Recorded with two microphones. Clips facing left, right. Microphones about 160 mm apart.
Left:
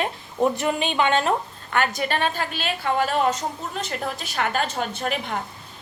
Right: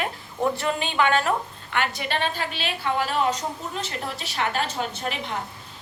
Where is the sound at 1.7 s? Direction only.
45° left (ahead or behind).